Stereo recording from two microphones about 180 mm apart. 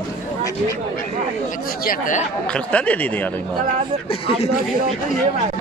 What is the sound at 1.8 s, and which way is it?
Speech, 45° left (ahead or behind).